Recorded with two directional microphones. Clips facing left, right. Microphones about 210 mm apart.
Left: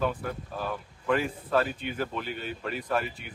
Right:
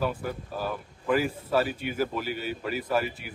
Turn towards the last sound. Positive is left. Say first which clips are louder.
# right 2 dB
turn(degrees=-5)  # may be behind; listen again after turning